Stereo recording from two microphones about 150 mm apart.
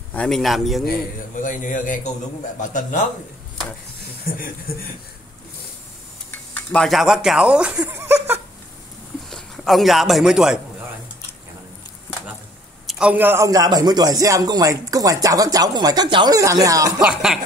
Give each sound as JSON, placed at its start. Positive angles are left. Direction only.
{"t": 0.1, "sound": "speech", "side_deg": 5}
{"t": 0.8, "sound": "a man's voice", "side_deg": 65}
{"t": 6.3, "sound": "speech", "side_deg": 10}
{"t": 9.3, "sound": "a man's voice", "side_deg": 0}
{"t": 12.8, "sound": "a man's voice", "side_deg": -5}
{"t": 17.0, "sound": "speech", "side_deg": -5}